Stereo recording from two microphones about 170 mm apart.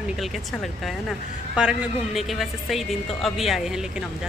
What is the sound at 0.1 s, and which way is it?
A woman's voice, centre (ahead or behind).